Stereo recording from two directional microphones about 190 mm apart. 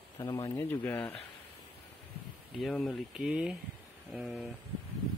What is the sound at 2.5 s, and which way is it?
Speech, centre (ahead or behind).